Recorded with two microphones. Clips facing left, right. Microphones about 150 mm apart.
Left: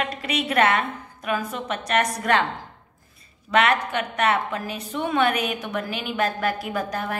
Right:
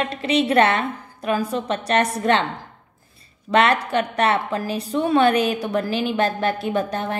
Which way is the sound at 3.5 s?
35° right (ahead or behind).